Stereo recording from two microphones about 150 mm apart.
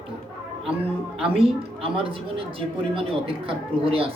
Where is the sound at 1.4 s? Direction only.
40° right (ahead or behind).